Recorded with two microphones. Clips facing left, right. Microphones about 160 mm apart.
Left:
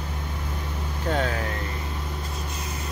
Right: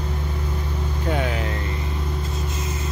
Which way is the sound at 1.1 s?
15° right (ahead or behind).